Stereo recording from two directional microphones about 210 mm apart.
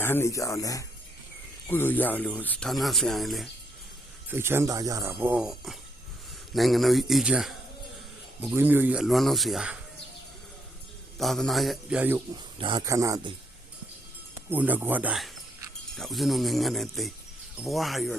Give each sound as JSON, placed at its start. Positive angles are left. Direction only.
{"t": 0.0, "sound": "speech", "side_deg": 10}
{"t": 4.3, "sound": "speech", "side_deg": -10}
{"t": 11.2, "sound": "speech", "side_deg": 0}
{"t": 12.5, "sound": "speech", "side_deg": -20}
{"t": 14.5, "sound": "speech", "side_deg": -10}